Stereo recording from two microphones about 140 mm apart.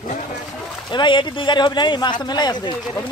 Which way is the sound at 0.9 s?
35° left (ahead or behind).